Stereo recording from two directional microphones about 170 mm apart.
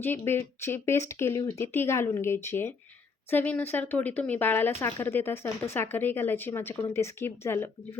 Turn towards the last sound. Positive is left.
turn(degrees=15)  # may be behind; listen again after turning